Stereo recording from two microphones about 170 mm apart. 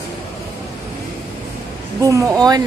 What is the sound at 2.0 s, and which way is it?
Speech, 20° right (ahead or behind).